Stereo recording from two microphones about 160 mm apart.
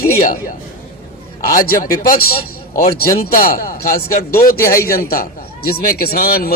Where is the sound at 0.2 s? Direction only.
55° left (ahead or behind).